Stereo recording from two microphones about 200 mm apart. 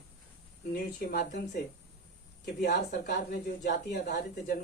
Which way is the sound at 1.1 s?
50° left (ahead or behind).